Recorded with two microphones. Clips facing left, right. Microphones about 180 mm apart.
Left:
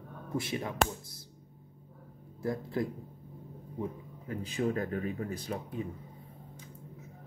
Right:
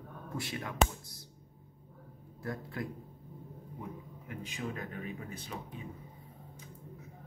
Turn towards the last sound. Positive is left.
turn(degrees=35)  # may be behind; listen again after turning